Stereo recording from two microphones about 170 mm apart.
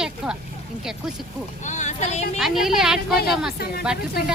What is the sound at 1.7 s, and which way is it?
Speech, 45° left (ahead or behind).